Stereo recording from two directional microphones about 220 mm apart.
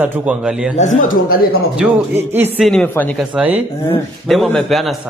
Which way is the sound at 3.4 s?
5° right (ahead or behind).